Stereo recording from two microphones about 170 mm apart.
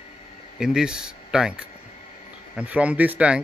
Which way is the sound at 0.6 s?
5° right (ahead or behind).